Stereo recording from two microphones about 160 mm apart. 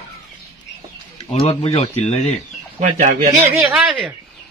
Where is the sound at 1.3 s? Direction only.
40° left (ahead or behind).